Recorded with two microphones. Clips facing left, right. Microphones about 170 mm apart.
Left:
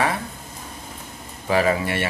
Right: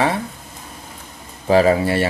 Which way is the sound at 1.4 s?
30° right (ahead or behind).